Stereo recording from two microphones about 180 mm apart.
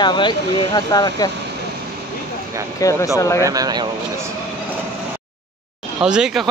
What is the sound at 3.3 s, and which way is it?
Speech, 20° right (ahead or behind).